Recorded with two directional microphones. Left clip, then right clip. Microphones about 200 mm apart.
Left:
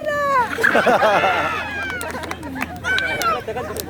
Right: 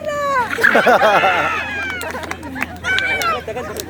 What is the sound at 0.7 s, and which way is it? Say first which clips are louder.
Speech: right 3 dB; 10° right (ahead or behind).